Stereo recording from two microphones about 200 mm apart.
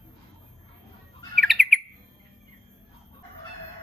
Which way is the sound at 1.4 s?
Centre (ahead or behind).